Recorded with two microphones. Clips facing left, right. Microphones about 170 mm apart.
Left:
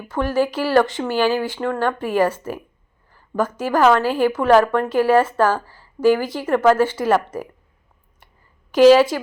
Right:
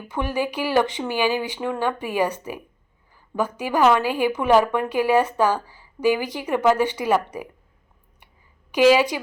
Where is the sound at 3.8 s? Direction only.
10° right (ahead or behind).